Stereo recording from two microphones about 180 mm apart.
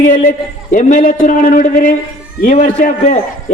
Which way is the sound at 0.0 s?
50° left (ahead or behind).